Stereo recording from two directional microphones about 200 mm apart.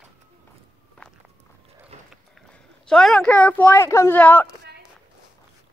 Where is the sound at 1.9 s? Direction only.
35° right (ahead or behind).